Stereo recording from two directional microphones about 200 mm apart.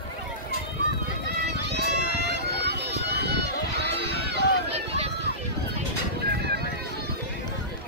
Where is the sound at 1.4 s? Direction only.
55° right (ahead or behind).